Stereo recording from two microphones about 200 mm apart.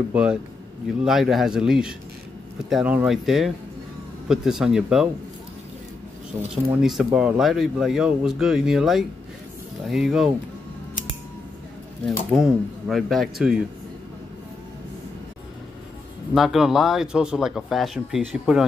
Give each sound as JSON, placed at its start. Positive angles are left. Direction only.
{"t": 0.1, "sound": "speech", "side_deg": -5}
{"t": 6.5, "sound": "speech", "side_deg": -5}
{"t": 12.3, "sound": "speech", "side_deg": 0}
{"t": 16.3, "sound": "speech", "side_deg": 0}